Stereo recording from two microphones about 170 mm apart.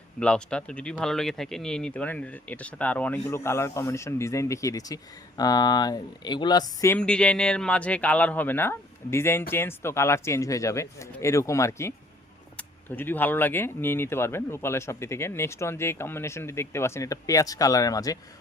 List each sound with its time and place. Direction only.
0.2 s speech: 5° left (ahead or behind); by 6.9 s 25° left (ahead or behind)
6.9 s speech: 5° left (ahead or behind)